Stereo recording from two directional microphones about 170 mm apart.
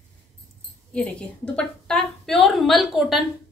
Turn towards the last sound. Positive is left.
turn(degrees=0)  # may be behind; listen again after turning